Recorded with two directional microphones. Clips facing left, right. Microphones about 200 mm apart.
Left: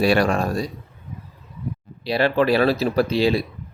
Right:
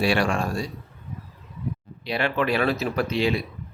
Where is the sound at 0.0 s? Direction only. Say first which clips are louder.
Left 4 dB; 40° left (ahead or behind).